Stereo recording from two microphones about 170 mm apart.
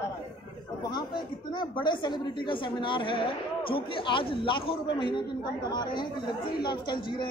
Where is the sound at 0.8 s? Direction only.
25° left (ahead or behind).